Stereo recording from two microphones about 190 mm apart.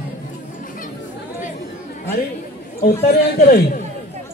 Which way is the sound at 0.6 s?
45° left (ahead or behind).